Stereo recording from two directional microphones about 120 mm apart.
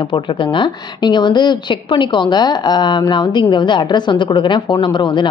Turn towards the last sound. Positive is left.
turn(degrees=40)  # may be behind; listen again after turning